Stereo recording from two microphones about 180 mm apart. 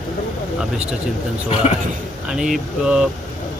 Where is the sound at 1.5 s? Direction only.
35° left (ahead or behind).